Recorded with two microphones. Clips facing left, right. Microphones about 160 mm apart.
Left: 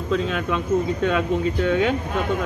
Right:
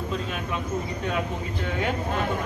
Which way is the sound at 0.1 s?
90° left.